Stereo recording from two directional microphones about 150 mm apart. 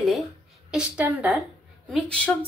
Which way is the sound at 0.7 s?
10° right (ahead or behind).